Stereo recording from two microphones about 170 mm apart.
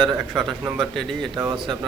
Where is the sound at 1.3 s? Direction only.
25° right (ahead or behind).